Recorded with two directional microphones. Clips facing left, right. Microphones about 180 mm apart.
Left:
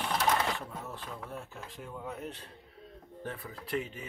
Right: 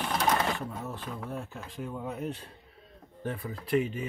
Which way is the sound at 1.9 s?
10° right (ahead or behind).